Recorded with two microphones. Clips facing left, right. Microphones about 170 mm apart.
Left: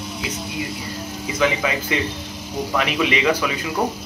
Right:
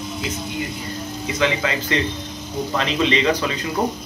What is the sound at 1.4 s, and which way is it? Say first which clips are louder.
Speech: left 1 dB; 10° left (ahead or behind).